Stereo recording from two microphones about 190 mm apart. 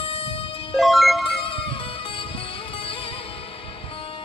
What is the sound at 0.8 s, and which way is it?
Music, centre (ahead or behind).